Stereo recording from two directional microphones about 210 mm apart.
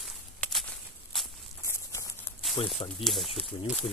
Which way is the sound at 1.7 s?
15° left (ahead or behind).